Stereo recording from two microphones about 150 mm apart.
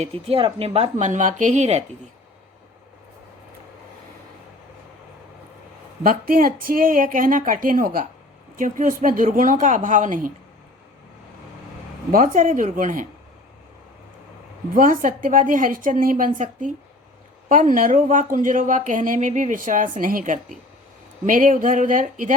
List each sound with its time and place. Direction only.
0.0 s speech: 40° right (ahead or behind)
6.0 s a woman's voice: 70° right (ahead or behind)
12.1 s speech: 65° right (ahead or behind)
14.8 s speech: 65° right (ahead or behind)